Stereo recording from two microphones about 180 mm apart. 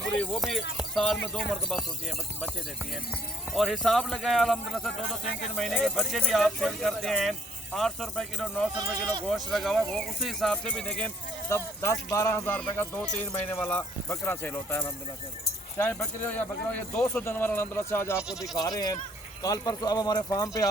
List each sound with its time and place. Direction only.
0.0 s speech: centre (ahead or behind)
3.5 s speech: centre (ahead or behind)
18.2 s speech: 5° right (ahead or behind)
18.5 s speech: 20° left (ahead or behind)